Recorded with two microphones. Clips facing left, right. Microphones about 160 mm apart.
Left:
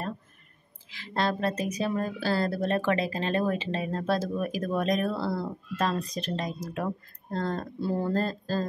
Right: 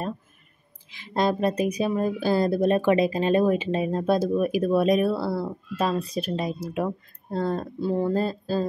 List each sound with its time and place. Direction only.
0.8 s speech: 15° right (ahead or behind)